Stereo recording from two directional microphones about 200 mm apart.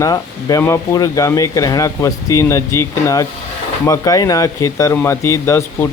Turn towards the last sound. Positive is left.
turn(degrees=15)  # may be behind; listen again after turning